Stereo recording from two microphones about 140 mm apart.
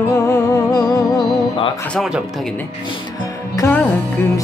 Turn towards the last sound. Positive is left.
turn(degrees=15)  # may be behind; listen again after turning